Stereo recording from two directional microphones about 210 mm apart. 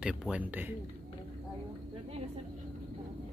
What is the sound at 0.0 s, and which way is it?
Speech, 5° right (ahead or behind).